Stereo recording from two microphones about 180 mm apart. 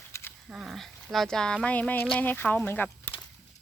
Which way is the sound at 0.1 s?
15° left (ahead or behind).